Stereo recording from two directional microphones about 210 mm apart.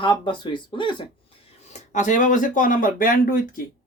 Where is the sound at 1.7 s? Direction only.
35° left (ahead or behind).